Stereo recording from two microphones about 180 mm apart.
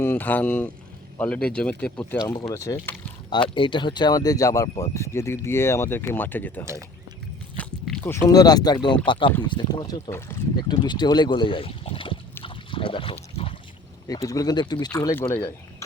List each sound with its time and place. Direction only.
0.0 s speech: 10° left (ahead or behind)
7.5 s a sound: 10° left (ahead or behind)
8.3 s speech: 20° left (ahead or behind)
10.6 s speech: 25° left (ahead or behind)
12.4 s a sound: 30° left (ahead or behind)
14.1 s speech: 20° left (ahead or behind)